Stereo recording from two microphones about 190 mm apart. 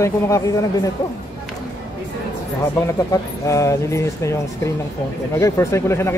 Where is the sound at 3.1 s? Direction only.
15° left (ahead or behind).